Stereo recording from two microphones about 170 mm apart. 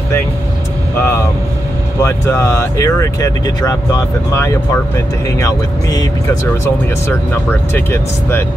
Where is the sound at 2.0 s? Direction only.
15° left (ahead or behind).